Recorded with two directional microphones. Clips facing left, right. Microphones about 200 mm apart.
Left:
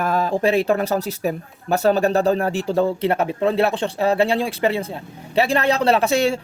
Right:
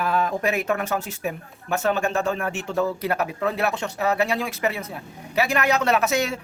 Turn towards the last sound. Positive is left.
turn(degrees=30)  # may be behind; listen again after turning